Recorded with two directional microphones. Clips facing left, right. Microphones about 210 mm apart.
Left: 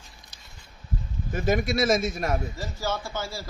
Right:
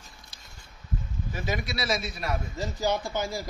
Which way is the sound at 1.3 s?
50° left (ahead or behind).